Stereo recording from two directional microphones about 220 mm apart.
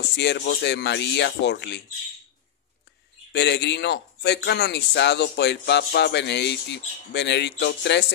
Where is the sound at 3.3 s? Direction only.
50° left (ahead or behind).